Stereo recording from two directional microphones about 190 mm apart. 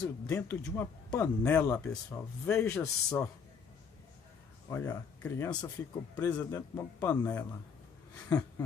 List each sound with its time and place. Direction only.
0.3 s speech: 15° left (ahead or behind)
4.6 s speech: 10° left (ahead or behind)
8.3 s a sound: 20° left (ahead or behind)